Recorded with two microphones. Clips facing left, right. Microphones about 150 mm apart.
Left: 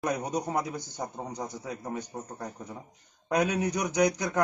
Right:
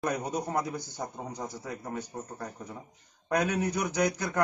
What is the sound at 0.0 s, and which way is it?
A man's voice, 15° left (ahead or behind).